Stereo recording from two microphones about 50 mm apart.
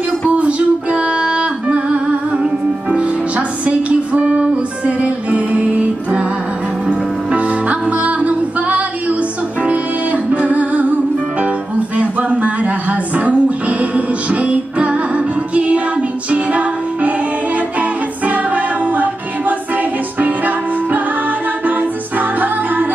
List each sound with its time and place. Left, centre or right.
0.3 s music: right